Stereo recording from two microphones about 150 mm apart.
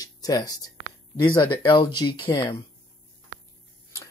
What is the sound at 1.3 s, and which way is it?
Speech, 30° left (ahead or behind).